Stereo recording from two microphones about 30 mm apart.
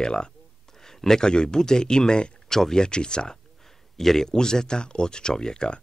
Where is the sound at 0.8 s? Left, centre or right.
Centre.